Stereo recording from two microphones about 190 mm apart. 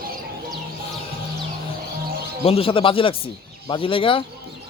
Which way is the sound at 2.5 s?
30° left (ahead or behind).